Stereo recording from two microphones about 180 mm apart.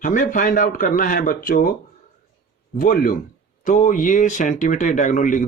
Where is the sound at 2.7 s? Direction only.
55° left (ahead or behind).